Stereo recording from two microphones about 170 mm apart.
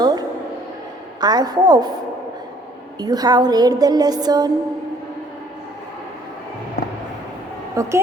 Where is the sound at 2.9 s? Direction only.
25° right (ahead or behind).